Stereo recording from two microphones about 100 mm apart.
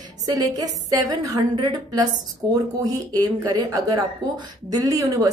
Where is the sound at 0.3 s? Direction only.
40° right (ahead or behind).